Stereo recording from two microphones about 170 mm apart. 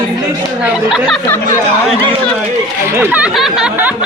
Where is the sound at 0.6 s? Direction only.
5° right (ahead or behind).